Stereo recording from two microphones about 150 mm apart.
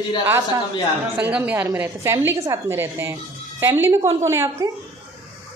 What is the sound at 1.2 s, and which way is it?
A woman's voice, 10° right (ahead or behind).